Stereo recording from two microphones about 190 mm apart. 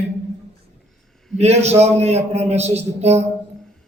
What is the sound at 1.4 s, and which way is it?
A man's voice, 35° right (ahead or behind).